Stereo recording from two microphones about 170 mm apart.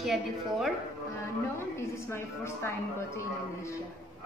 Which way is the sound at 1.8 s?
15° left (ahead or behind).